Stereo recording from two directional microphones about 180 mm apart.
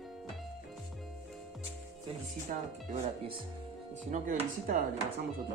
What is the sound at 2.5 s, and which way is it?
Chopping, 45° right (ahead or behind).